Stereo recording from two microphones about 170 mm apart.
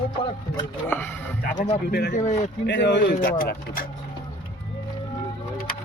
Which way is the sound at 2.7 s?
90° left.